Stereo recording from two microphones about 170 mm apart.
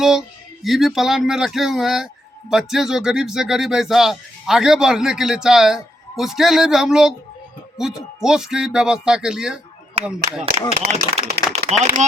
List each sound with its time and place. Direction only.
0.0 s speech: centre (ahead or behind)
10.8 s speech: 40° right (ahead or behind)